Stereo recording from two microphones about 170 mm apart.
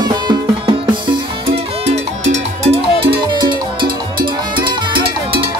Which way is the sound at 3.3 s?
25° right (ahead or behind).